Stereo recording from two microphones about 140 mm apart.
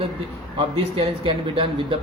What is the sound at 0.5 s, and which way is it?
A man's voice, 40° right (ahead or behind).